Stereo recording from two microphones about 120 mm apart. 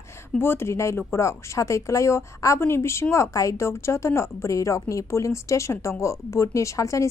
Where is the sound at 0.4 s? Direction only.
20° left (ahead or behind).